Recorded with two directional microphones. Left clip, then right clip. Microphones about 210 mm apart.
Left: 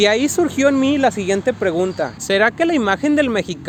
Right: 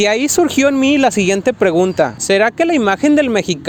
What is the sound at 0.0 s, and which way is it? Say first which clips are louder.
Speech: right 2 dB; 40° right (ahead or behind).